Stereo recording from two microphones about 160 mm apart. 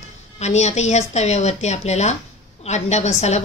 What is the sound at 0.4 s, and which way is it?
A woman's voice, 45° left (ahead or behind).